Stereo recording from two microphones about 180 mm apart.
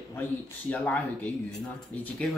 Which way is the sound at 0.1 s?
15° left (ahead or behind).